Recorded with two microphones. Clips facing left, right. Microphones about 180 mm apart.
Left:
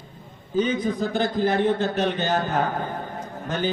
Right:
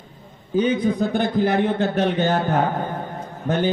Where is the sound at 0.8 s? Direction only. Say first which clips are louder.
Right 3 dB; 60° right (ahead or behind).